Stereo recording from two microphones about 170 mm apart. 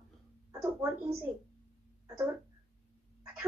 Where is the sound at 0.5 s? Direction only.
20° right (ahead or behind).